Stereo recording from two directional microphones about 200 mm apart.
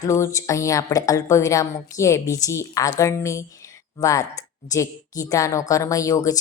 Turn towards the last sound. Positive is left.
turn(degrees=15)  # may be behind; listen again after turning